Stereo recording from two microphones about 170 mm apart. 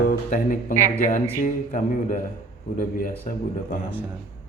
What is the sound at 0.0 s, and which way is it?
Speech, 55° left (ahead or behind).